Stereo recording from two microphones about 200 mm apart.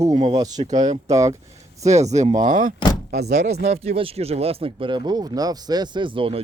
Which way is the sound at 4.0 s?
30° right (ahead or behind).